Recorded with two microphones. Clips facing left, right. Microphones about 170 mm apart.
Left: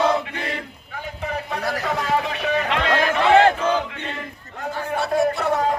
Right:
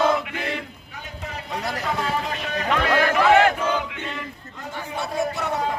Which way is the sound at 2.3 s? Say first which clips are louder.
Left 5 dB; 65° left (ahead or behind).